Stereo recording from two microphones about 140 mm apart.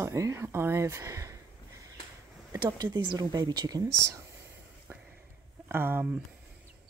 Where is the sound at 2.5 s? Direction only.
30° right (ahead or behind).